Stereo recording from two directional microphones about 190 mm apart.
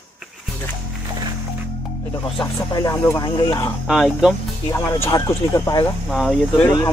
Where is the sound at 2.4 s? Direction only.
15° left (ahead or behind).